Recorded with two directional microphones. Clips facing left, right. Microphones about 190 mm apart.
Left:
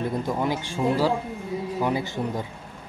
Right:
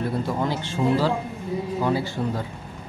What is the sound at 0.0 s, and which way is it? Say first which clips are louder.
Speech: right 1 dB; 15° left (ahead or behind).